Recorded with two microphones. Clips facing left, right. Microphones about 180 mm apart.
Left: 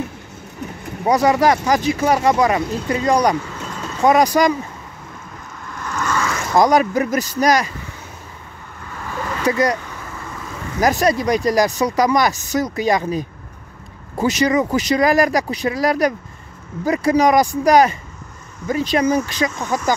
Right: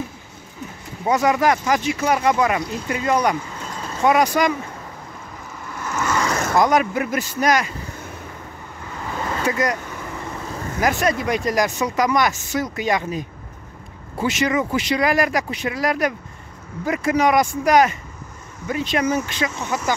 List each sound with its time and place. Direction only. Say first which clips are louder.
1.0 s speech: left 3 dB; 35° left (ahead or behind)
5.8 s vehicle: even; 10° right (ahead or behind)
6.2 s vehicle: right 2 dB; 40° right (ahead or behind)
6.6 s speech: left 5 dB; 35° left (ahead or behind)
9.5 s speech: left 5 dB; 35° left (ahead or behind)
10.8 s speech: left 4 dB; 40° left (ahead or behind)